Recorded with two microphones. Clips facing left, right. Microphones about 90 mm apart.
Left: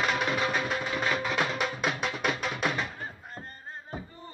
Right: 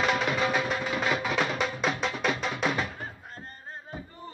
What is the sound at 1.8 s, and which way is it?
Music, 5° left (ahead or behind).